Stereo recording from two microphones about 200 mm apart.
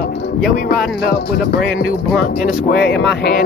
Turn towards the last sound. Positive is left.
turn(degrees=50)  # may be behind; listen again after turning